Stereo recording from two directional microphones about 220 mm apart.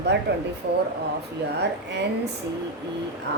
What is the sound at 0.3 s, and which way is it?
Speech, 50° right (ahead or behind).